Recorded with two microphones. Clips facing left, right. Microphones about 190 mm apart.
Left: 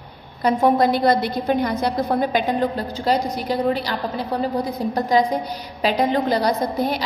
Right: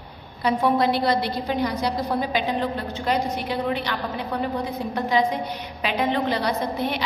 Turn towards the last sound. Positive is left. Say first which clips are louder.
# left 4 dB
turn(degrees=40)  # may be behind; listen again after turning